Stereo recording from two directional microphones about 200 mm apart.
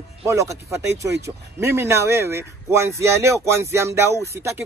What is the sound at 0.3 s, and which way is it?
Speech, 15° right (ahead or behind).